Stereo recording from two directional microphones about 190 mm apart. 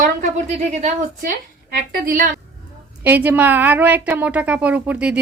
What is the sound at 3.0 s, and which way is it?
A woman's voice, 10° right (ahead or behind).